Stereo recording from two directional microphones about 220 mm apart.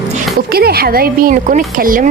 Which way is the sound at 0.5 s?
45° right (ahead or behind).